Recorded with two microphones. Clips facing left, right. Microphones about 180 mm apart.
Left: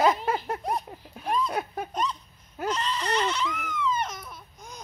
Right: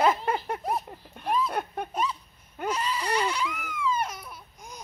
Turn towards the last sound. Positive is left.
turn(degrees=-10)  # may be behind; listen again after turning